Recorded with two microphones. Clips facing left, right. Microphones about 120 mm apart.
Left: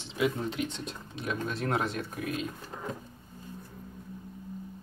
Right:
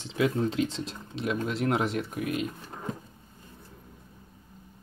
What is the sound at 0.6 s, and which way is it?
Speech, 90° right.